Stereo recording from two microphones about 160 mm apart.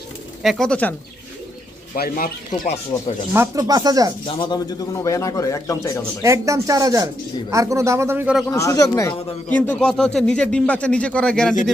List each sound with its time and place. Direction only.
0.4 s a man's voice: 5° left (ahead or behind)
2.0 s a man's voice: 65° left (ahead or behind)
3.3 s speech: 20° right (ahead or behind)
4.4 s a man's voice: 25° left (ahead or behind)
6.2 s speech: 20° right (ahead or behind)
8.4 s a man's voice: 20° left (ahead or behind)